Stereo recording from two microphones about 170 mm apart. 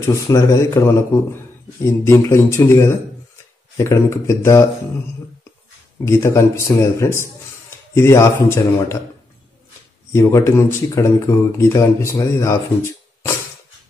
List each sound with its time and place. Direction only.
0.0 s speech: 20° left (ahead or behind)
6.0 s speech: 15° left (ahead or behind)
10.1 s speech: 15° left (ahead or behind)